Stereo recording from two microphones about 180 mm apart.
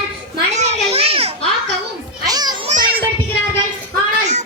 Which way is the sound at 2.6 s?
50° right (ahead or behind).